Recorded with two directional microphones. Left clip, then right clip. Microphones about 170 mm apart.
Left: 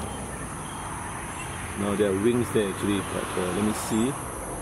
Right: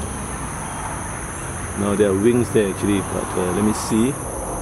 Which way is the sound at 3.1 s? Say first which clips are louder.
Right 6 dB; 25° left (ahead or behind).